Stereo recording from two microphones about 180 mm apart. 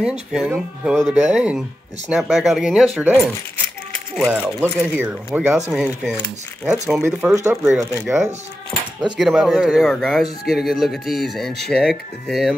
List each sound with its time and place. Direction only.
0.3 s speech: 5° right (ahead or behind)
4.3 s speech: 10° right (ahead or behind)
8.7 s keys jangling: 15° left (ahead or behind)
9.1 s speech: 5° right (ahead or behind)